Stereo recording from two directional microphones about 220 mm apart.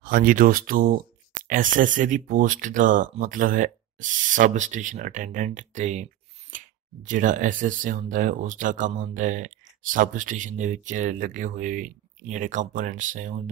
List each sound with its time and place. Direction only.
0.0 s speech: 40° right (ahead or behind)